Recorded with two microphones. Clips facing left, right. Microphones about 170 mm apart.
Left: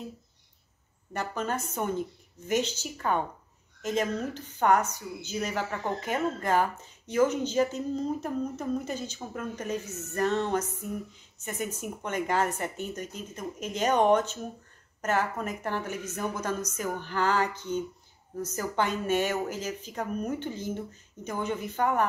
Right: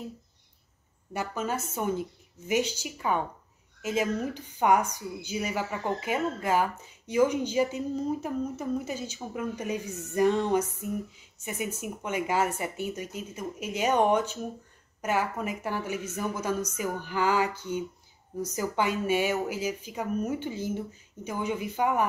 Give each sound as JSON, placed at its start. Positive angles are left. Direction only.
{"t": 1.1, "sound": "speech", "side_deg": -10}